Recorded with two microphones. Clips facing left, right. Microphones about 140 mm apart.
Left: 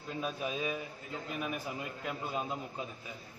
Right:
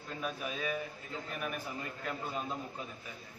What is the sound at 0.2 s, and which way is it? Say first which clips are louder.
A man's voice: left 2 dB; 20° left (ahead or behind).